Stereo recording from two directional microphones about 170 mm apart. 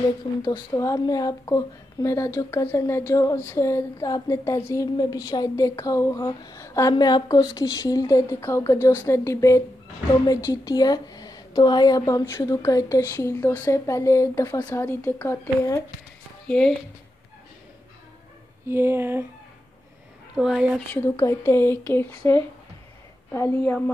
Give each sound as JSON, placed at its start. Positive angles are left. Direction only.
{"t": 0.4, "sound": "speech", "side_deg": 20}
{"t": 16.4, "sound": "speech", "side_deg": 5}
{"t": 18.7, "sound": "speech", "side_deg": -15}
{"t": 20.3, "sound": "a woman's voice", "side_deg": -5}
{"t": 20.9, "sound": "speech", "side_deg": 15}
{"t": 23.3, "sound": "speech", "side_deg": 15}